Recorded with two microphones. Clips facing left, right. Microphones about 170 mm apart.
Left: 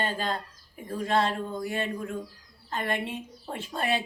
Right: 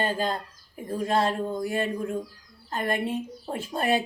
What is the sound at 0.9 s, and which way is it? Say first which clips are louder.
Speech: right 2 dB; 10° right (ahead or behind).